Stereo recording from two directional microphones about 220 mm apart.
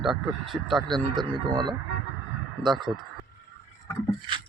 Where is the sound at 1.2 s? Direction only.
20° right (ahead or behind).